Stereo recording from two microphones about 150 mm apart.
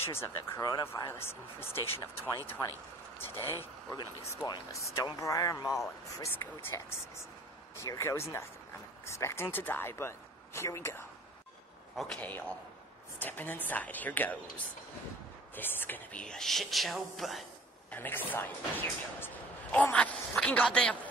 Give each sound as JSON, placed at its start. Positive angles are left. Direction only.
{"t": 0.1, "sound": "speech", "side_deg": 20}
{"t": 12.0, "sound": "speech", "side_deg": 5}
{"t": 15.5, "sound": "speech", "side_deg": 15}
{"t": 17.9, "sound": "speech", "side_deg": 15}